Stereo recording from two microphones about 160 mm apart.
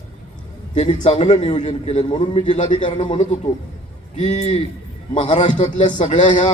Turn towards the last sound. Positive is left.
turn(degrees=45)  # may be behind; listen again after turning